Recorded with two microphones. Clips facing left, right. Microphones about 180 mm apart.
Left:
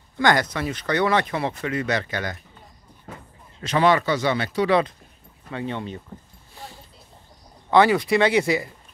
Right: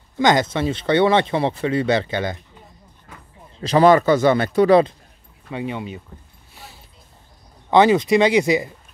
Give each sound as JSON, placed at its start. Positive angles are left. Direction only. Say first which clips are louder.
{"t": 0.2, "sound": "speech", "louder": "right 3 dB", "side_deg": -20}
{"t": 3.5, "sound": "speech", "louder": "right 6 dB", "side_deg": -35}
{"t": 5.5, "sound": "speech", "louder": "right 2 dB", "side_deg": -10}
{"t": 7.7, "sound": "speech", "louder": "right 3 dB", "side_deg": -20}